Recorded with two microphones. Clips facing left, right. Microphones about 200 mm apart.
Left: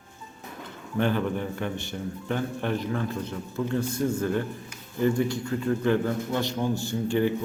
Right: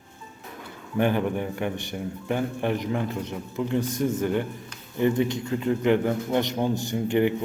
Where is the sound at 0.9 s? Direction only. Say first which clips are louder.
Right 2 dB; 15° right (ahead or behind).